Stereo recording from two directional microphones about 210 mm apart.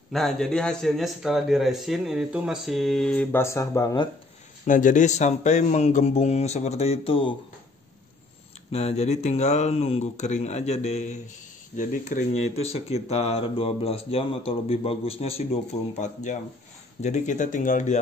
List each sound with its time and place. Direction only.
0.1 s a man's voice: centre (ahead or behind); by 4.1 s 20° left (ahead or behind)
4.6 s speech: 40° left (ahead or behind)
8.7 s speech: 30° left (ahead or behind)